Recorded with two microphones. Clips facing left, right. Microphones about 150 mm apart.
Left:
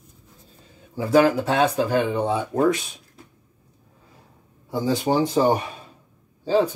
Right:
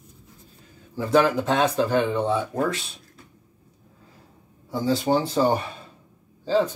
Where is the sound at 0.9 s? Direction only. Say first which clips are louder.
Left 2 dB; 10° left (ahead or behind).